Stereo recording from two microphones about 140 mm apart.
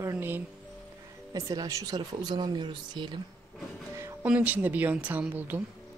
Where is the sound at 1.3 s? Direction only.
25° right (ahead or behind).